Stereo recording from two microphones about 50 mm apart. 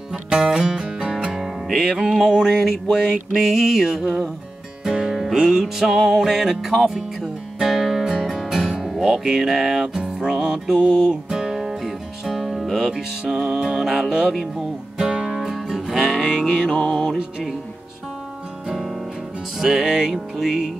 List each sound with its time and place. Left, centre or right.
0.3 s music: centre
1.3 s music: centre
19.6 s music: centre